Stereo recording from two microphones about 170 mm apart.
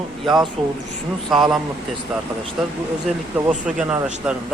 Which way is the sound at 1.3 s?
Centre (ahead or behind).